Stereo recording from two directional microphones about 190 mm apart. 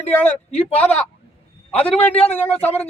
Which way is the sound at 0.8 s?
5° left (ahead or behind).